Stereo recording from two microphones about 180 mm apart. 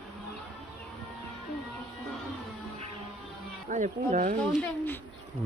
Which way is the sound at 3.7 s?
45° right (ahead or behind).